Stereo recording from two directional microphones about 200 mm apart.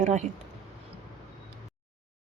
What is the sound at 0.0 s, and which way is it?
Speech, 35° right (ahead or behind).